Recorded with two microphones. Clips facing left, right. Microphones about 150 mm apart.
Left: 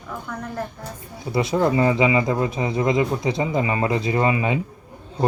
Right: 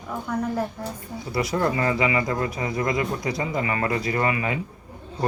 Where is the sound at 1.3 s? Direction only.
25° left (ahead or behind).